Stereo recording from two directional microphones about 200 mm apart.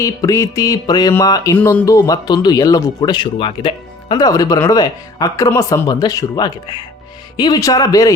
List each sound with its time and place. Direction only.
0.0 s music: 15° left (ahead or behind)
1.5 s speech: 10° left (ahead or behind)